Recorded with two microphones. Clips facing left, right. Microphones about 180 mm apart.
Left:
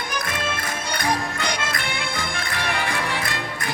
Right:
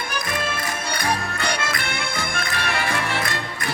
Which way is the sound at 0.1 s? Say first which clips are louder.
Right 1 dB; 20° left (ahead or behind).